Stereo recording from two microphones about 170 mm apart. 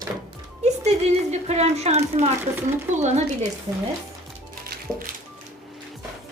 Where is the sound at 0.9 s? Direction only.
40° right (ahead or behind).